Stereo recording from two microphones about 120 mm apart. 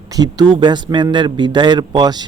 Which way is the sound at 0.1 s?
35° right (ahead or behind).